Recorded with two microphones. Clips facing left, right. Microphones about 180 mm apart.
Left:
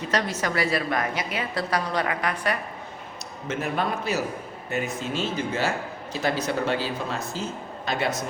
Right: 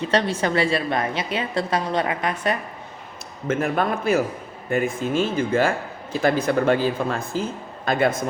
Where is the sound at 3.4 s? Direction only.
50° right (ahead or behind).